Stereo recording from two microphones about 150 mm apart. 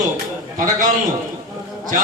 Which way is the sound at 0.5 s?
60° right (ahead or behind).